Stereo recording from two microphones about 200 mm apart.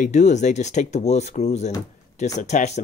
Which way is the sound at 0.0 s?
35° left (ahead or behind).